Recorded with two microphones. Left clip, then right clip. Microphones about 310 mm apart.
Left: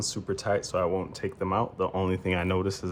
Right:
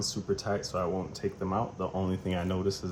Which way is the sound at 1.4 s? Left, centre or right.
Left.